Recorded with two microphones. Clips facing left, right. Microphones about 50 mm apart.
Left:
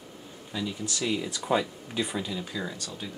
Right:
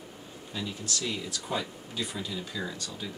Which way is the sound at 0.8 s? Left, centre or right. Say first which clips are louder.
Left 3 dB; centre.